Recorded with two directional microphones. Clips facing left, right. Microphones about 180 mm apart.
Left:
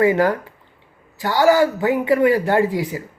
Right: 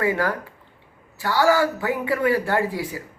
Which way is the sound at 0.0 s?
20° left (ahead or behind).